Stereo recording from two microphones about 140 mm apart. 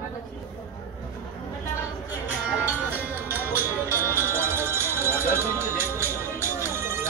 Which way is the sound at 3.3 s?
15° right (ahead or behind).